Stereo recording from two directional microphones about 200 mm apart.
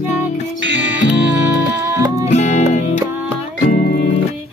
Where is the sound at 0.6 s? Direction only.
60° right (ahead or behind).